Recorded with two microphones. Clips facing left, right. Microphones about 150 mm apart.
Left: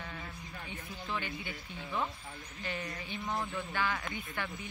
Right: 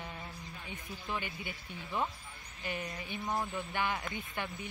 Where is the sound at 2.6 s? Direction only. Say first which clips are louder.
Right 1 dB; 15° right (ahead or behind).